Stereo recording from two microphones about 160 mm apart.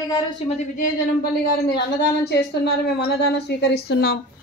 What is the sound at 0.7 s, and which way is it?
Speech, 60° left (ahead or behind).